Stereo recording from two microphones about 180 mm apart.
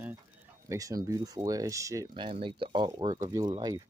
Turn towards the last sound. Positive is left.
turn(degrees=-20)  # may be behind; listen again after turning